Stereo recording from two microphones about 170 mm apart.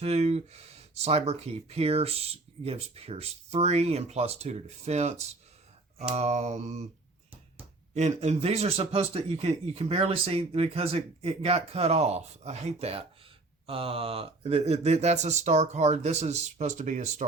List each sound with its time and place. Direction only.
0.0 s speech: 40° right (ahead or behind)
7.9 s speech: 40° right (ahead or behind)